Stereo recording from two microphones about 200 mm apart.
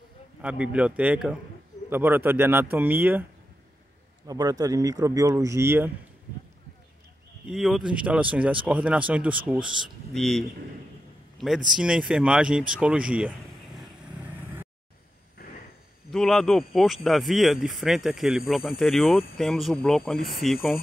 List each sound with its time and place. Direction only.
0.4 s speech: 5° right (ahead or behind)
4.3 s speech: 20° right (ahead or behind)
7.4 s speech: centre (ahead or behind)
15.4 s a sound: 45° left (ahead or behind)
16.1 s speech: centre (ahead or behind)